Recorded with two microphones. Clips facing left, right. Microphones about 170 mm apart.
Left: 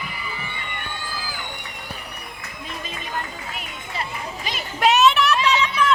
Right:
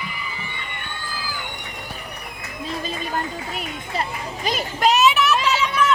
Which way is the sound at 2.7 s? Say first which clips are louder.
Right 5 dB; 35° right (ahead or behind).